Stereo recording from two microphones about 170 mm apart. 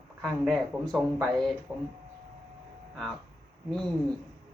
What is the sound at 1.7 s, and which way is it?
Speech, 20° right (ahead or behind).